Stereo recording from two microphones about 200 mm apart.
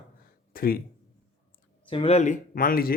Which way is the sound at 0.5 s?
45° left (ahead or behind).